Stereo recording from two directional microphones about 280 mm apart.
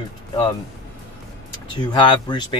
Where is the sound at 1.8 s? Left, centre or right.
Centre.